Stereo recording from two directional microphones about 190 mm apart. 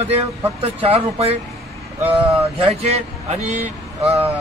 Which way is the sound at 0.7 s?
30° right (ahead or behind).